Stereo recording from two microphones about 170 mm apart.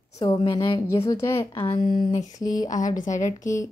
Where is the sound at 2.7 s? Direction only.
50° left (ahead or behind).